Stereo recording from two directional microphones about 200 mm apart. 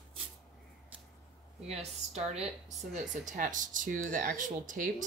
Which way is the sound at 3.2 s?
40° right (ahead or behind).